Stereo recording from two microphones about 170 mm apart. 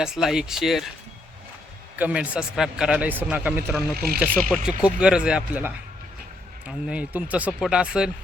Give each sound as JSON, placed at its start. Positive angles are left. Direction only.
{"t": 0.0, "sound": "speech", "side_deg": -5}
{"t": 2.0, "sound": "a man's voice", "side_deg": -10}
{"t": 3.9, "sound": "speech", "side_deg": -65}
{"t": 4.4, "sound": "a man's voice", "side_deg": 5}